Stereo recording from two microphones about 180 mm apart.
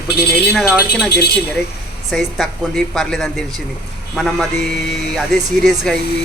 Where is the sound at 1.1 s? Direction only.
60° left (ahead or behind).